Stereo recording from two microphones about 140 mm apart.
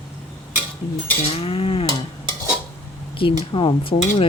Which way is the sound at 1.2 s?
45° left (ahead or behind).